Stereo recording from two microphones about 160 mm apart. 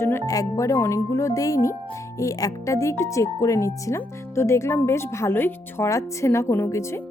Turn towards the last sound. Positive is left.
turn(degrees=15)  # may be behind; listen again after turning